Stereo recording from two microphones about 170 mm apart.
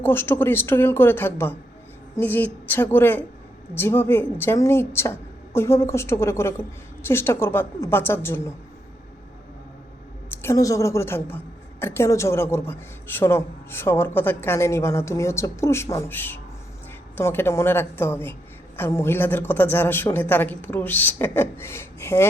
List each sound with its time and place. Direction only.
0.0 s a woman's voice: 15° left (ahead or behind)
10.4 s a woman's voice: 20° left (ahead or behind)